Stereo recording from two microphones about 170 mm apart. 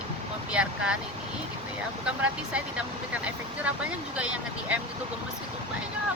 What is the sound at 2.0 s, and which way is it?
Speech, 5° right (ahead or behind).